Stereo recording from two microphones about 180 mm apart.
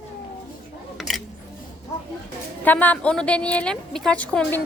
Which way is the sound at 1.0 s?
Centre (ahead or behind).